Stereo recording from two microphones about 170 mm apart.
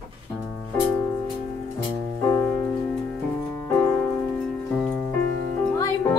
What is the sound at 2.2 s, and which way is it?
Music, 15° left (ahead or behind).